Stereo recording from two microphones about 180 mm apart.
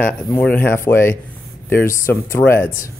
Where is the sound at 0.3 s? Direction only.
10° left (ahead or behind).